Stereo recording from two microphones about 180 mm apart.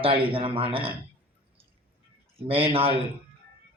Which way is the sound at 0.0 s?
30° right (ahead or behind).